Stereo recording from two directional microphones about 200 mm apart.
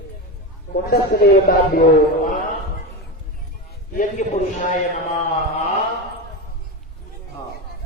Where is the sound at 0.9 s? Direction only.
55° left (ahead or behind).